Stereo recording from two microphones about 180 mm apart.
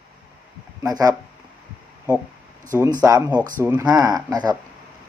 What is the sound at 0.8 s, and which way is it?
Speech, 20° right (ahead or behind).